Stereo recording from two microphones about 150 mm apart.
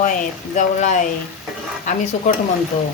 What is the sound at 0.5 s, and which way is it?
A woman's voice, 55° left (ahead or behind).